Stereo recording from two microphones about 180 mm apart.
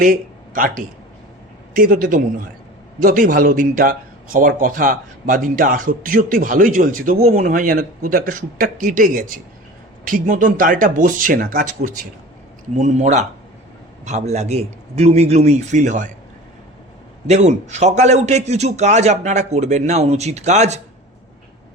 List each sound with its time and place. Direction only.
0.0 s a man's voice: 50° right (ahead or behind)
17.2 s a man's voice: 40° right (ahead or behind)